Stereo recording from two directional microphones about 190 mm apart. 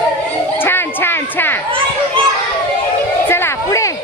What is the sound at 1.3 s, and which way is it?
Children playing, 10° left (ahead or behind).